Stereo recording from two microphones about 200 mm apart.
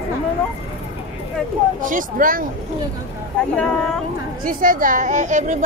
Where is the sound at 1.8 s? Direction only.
45° right (ahead or behind).